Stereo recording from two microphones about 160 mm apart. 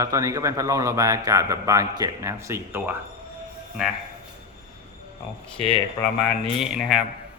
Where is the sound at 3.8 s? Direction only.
5° right (ahead or behind).